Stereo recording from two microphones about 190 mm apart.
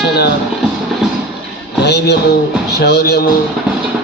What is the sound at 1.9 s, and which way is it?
Music, 65° left (ahead or behind).